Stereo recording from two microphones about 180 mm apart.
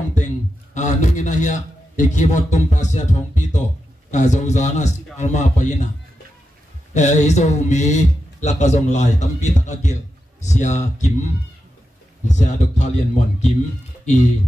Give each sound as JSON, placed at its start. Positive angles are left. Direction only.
{"t": 0.7, "sound": "speech", "side_deg": 40}
{"t": 6.9, "sound": "speech", "side_deg": 40}
{"t": 12.4, "sound": "speech", "side_deg": 40}